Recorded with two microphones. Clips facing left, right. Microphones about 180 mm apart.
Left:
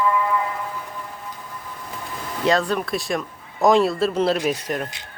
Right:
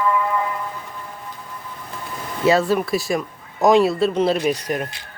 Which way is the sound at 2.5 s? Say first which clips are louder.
Right 4 dB; 5° right (ahead or behind).